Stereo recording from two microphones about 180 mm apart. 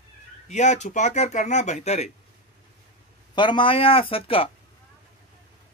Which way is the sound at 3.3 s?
25° left (ahead or behind).